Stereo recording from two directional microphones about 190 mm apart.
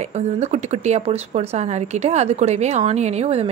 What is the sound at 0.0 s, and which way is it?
Speech, 35° right (ahead or behind).